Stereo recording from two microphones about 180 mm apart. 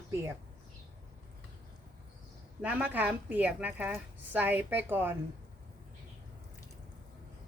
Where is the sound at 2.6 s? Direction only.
5° right (ahead or behind).